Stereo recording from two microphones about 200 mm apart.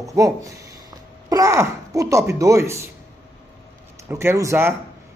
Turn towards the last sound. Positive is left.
turn(degrees=-15)  # may be behind; listen again after turning